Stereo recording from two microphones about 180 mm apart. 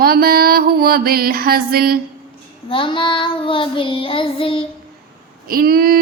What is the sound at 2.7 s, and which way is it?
Child singing, 30° left (ahead or behind).